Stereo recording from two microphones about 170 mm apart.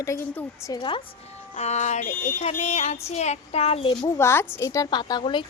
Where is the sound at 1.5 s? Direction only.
40° left (ahead or behind).